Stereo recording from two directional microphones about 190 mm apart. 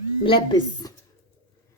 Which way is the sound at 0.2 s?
25° left (ahead or behind).